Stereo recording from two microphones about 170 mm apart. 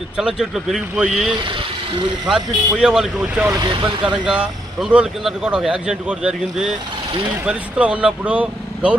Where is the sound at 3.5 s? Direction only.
25° right (ahead or behind).